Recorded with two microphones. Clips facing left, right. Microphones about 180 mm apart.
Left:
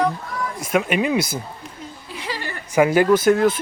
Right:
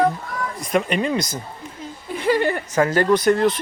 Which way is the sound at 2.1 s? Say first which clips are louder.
Right 12 dB; 50° right (ahead or behind).